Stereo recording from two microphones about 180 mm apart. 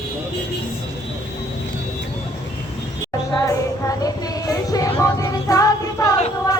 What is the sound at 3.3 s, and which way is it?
Child singing, 20° left (ahead or behind).